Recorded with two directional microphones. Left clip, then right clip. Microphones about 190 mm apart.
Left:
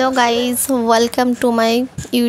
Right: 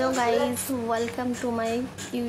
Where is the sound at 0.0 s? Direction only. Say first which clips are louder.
Left 9 dB; 55° left (ahead or behind).